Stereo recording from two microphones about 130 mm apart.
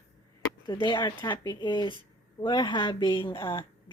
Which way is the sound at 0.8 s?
35° left (ahead or behind).